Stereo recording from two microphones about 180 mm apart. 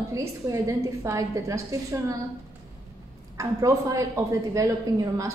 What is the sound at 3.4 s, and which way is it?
A woman's voice, 20° right (ahead or behind).